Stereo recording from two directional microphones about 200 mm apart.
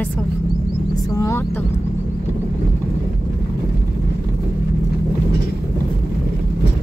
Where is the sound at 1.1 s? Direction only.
15° left (ahead or behind).